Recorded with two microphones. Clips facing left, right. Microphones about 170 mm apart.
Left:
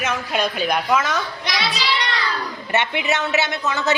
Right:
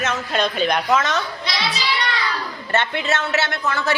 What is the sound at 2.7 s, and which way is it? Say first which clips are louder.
A woman's voice: even; 15° left (ahead or behind).